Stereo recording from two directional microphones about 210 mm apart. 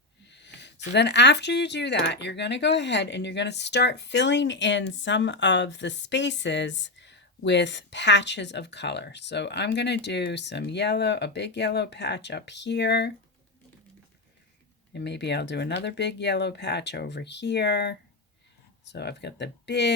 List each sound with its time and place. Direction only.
0.3 s speech: 55° left (ahead or behind)
14.9 s speech: 55° left (ahead or behind)